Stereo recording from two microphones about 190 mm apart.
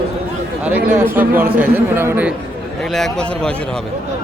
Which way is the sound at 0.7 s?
5° right (ahead or behind).